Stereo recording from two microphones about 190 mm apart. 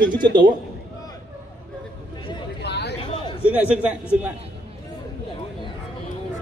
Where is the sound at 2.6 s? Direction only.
60° left (ahead or behind).